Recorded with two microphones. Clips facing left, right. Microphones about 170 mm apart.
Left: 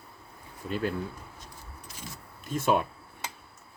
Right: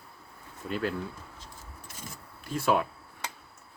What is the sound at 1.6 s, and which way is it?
Keys jangling, 50° right (ahead or behind).